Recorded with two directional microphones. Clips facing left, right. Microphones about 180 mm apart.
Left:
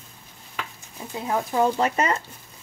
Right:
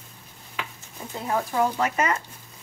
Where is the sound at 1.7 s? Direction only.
30° left (ahead or behind).